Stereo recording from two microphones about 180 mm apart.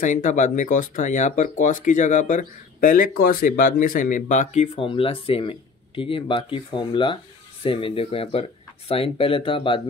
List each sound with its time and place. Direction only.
0.0 s speech: 45° left (ahead or behind); by 9.8 s 30° left (ahead or behind)